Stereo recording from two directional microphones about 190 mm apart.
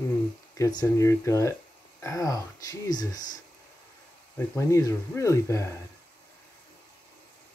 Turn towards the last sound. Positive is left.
turn(degrees=15)  # may be behind; listen again after turning